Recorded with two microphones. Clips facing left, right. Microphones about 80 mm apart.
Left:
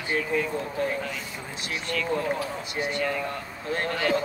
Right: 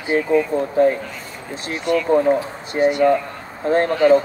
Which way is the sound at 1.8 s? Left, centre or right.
Centre.